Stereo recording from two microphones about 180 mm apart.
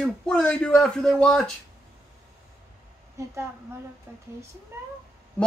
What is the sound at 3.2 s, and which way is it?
A woman's voice, 15° right (ahead or behind).